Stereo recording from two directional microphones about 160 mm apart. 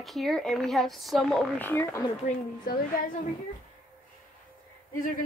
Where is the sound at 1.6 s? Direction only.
15° left (ahead or behind).